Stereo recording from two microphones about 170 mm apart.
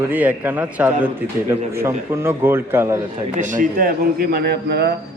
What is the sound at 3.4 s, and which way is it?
A man's voice, 50° right (ahead or behind).